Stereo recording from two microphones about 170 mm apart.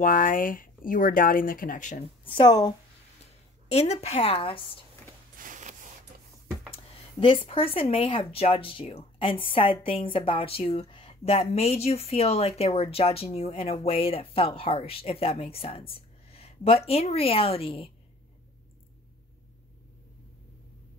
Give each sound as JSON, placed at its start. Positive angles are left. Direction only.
{"t": 0.0, "sound": "speech", "side_deg": 55}
{"t": 2.2, "sound": "a woman's voice", "side_deg": 25}
{"t": 3.6, "sound": "speech", "side_deg": 40}
{"t": 5.4, "sound": "a sound", "side_deg": -50}
{"t": 6.7, "sound": "a woman's voice", "side_deg": 30}